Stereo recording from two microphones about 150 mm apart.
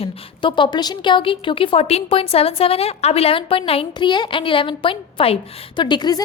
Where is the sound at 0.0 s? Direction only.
40° left (ahead or behind).